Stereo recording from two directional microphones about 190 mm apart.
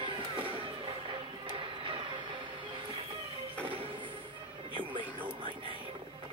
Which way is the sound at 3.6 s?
30° right (ahead or behind).